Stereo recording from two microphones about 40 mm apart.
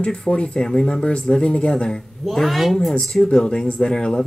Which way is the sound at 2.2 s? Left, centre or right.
Centre.